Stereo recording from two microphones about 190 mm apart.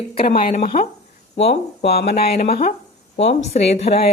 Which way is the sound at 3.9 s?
50° left (ahead or behind).